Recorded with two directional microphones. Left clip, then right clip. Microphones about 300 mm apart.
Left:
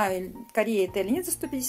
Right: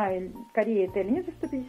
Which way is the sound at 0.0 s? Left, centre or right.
Left.